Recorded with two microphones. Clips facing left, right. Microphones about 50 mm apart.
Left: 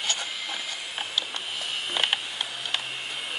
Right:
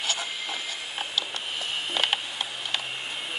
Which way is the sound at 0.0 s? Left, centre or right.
Centre.